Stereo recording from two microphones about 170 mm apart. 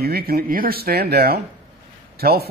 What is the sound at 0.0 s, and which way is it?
Speech, 65° right (ahead or behind).